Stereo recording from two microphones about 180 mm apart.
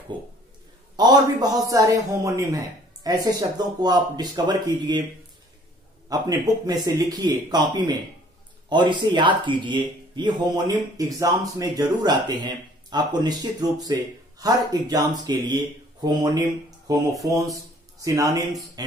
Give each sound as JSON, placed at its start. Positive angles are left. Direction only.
{"t": 0.9, "sound": "a man's voice", "side_deg": -25}
{"t": 6.0, "sound": "a man's voice", "side_deg": -20}